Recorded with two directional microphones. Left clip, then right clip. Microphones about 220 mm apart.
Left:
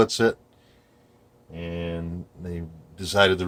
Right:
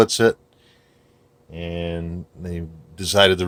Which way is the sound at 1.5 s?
50° right (ahead or behind).